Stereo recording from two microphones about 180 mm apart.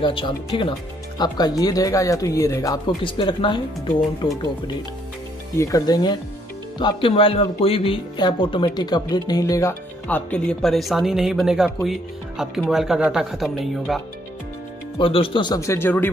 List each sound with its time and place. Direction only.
0.0 s speech: 30° left (ahead or behind)
3.0 s speech: 30° left (ahead or behind)
5.6 s speech: 20° left (ahead or behind); by 14.0 s centre (ahead or behind)
15.0 s speech: 30° left (ahead or behind); by 16.1 s 10° left (ahead or behind)